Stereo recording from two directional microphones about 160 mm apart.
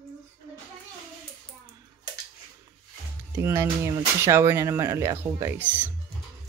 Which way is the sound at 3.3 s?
15° right (ahead or behind).